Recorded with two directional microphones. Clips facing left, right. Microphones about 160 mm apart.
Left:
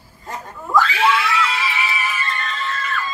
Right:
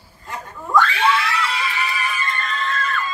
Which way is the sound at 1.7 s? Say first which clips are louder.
Left 1 dB; 5° left (ahead or behind).